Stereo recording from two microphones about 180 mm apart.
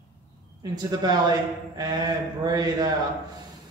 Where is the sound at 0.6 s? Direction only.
25° right (ahead or behind).